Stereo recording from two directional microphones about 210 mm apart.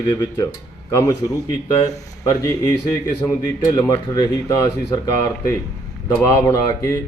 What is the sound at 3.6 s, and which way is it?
Speech, 15° left (ahead or behind).